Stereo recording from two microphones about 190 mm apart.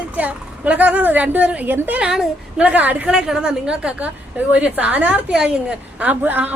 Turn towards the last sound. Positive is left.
turn(degrees=-10)  # may be behind; listen again after turning